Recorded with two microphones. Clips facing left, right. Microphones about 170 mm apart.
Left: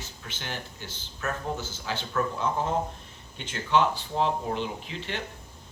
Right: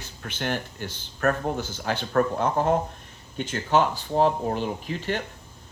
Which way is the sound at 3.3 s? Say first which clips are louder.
Right 3 dB; 45° right (ahead or behind).